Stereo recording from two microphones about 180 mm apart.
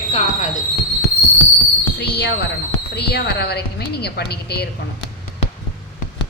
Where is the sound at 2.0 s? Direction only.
65° left (ahead or behind).